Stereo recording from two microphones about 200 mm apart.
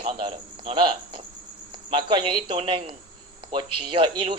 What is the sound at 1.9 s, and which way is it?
Speech, 25° right (ahead or behind).